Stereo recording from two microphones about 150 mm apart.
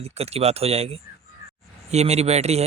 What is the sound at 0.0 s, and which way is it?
Speech, 45° right (ahead or behind).